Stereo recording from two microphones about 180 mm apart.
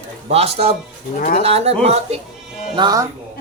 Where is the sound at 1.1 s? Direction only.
45° left (ahead or behind).